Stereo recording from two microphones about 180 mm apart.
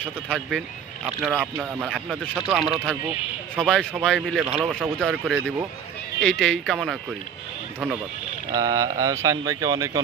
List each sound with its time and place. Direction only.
0.0 s speech: 5° left (ahead or behind)
1.0 s speech: 10° right (ahead or behind)
4.9 s speech: centre (ahead or behind)
8.5 s speech: 20° right (ahead or behind)